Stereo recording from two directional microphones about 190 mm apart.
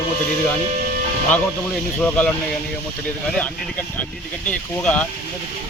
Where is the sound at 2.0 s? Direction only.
5° left (ahead or behind).